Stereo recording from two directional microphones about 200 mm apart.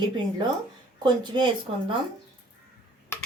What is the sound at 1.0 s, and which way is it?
Speech, 20° right (ahead or behind).